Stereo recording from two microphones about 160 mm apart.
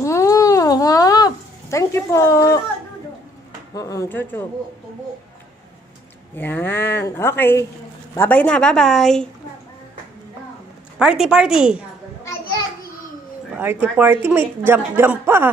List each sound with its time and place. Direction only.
0.0 s a sound: 20° left (ahead or behind)
3.7 s a woman's voice: 20° left (ahead or behind)
6.3 s a woman's voice: 10° left (ahead or behind)
11.0 s a woman's voice: 5° right (ahead or behind)
13.5 s speech: 10° right (ahead or behind)